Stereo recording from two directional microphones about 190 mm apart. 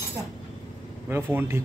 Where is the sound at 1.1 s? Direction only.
10° right (ahead or behind).